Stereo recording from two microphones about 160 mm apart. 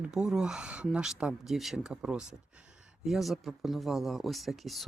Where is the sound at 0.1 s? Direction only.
5° right (ahead or behind).